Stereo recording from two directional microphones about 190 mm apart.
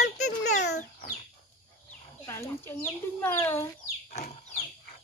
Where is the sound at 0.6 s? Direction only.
60° left (ahead or behind).